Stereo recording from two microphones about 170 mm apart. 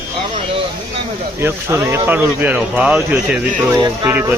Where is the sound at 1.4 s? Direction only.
15° right (ahead or behind).